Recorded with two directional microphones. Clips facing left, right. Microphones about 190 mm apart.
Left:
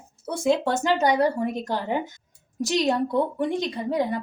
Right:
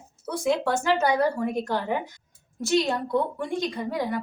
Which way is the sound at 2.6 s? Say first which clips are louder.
Left 1 dB; 20° left (ahead or behind).